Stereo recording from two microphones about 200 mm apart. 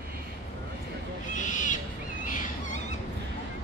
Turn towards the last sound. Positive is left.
turn(degrees=40)  # may be behind; listen again after turning